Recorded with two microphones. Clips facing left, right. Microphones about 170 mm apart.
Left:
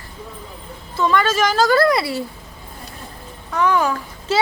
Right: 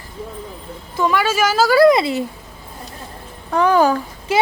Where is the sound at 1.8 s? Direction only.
20° right (ahead or behind).